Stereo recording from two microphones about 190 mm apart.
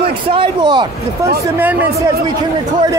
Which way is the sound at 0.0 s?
30° right (ahead or behind).